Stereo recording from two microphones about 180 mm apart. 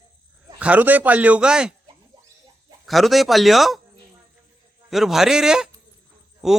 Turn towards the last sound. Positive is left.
turn(degrees=0)  # may be behind; listen again after turning